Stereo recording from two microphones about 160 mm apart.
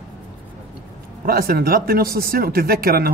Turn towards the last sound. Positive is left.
turn(degrees=-70)  # may be behind; listen again after turning